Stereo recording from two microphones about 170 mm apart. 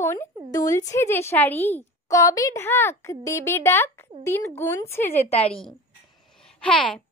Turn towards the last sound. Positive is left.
turn(degrees=5)  # may be behind; listen again after turning